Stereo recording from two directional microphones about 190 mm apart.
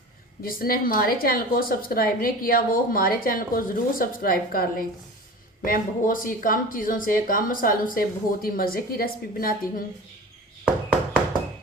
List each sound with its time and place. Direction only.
0.4 s speech: 50° left (ahead or behind)